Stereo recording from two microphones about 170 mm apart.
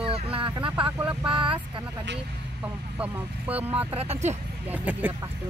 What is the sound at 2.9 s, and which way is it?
Speech, 10° right (ahead or behind).